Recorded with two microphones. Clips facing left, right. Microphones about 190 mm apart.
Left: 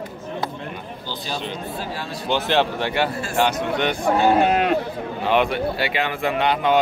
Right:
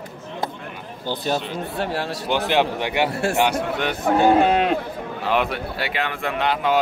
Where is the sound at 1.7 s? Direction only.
70° right (ahead or behind).